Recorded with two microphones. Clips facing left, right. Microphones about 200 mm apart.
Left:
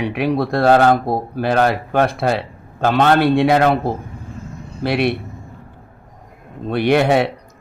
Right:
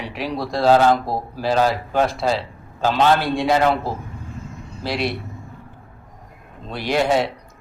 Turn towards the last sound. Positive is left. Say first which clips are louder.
# left 5 dB
turn(degrees=60)  # may be behind; listen again after turning